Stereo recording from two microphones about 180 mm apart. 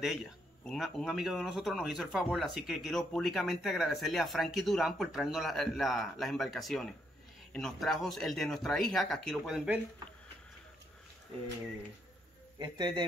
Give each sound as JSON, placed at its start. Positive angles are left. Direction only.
{"t": 0.0, "sound": "speech", "side_deg": 0}
{"t": 12.5, "sound": "a man's voice", "side_deg": -25}